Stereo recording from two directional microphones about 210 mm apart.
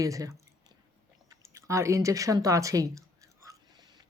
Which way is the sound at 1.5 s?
15° right (ahead or behind).